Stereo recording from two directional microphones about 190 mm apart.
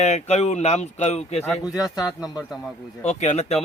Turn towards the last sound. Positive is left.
turn(degrees=35)  # may be behind; listen again after turning